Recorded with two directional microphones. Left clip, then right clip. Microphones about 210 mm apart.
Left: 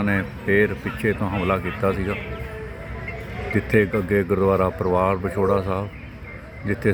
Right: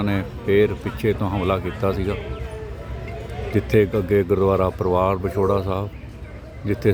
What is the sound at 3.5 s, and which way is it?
Speech, 15° right (ahead or behind).